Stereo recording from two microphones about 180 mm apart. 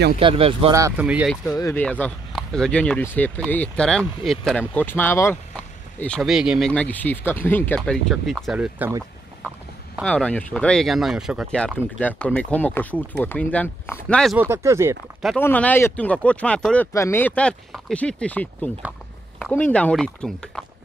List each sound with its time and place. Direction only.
0.2 s speech: 30° right (ahead or behind)
0.9 s speech: 5° right (ahead or behind)
6.7 s speech: 10° left (ahead or behind); by 8.9 s 10° right (ahead or behind)
10.0 s speech: 5° left (ahead or behind)
14.4 s speech: 15° right (ahead or behind)
15.2 s speech: 10° left (ahead or behind)